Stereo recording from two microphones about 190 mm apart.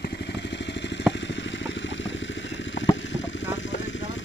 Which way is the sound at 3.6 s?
75° left (ahead or behind).